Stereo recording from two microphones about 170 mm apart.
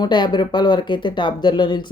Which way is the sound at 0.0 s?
25° left (ahead or behind).